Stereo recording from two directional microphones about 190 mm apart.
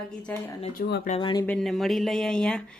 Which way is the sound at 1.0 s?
30° left (ahead or behind).